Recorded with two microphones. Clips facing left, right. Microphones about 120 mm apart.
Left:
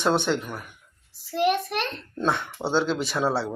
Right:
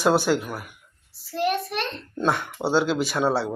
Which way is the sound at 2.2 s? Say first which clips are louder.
Right 2 dB; centre (ahead or behind).